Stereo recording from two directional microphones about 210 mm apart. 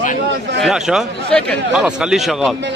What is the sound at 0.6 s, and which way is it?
A man's voice, centre (ahead or behind).